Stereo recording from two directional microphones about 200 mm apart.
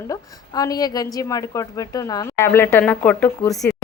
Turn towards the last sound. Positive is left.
turn(degrees=5)  # may be behind; listen again after turning